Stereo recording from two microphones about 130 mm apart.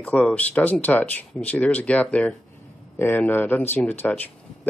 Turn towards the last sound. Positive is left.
turn(degrees=10)  # may be behind; listen again after turning